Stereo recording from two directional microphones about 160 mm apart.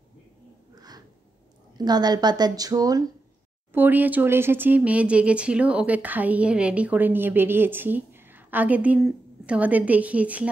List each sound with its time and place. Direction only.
0.7 s a sound: 25° right (ahead or behind)
1.8 s speech: 25° right (ahead or behind)
3.7 s speech: 10° right (ahead or behind)